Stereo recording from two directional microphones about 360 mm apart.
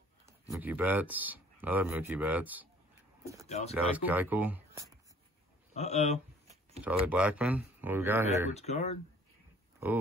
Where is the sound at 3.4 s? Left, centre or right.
Centre.